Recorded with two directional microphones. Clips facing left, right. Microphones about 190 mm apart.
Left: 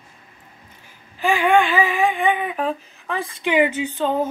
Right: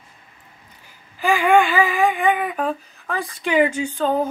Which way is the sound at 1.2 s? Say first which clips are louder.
Right 1 dB; centre (ahead or behind).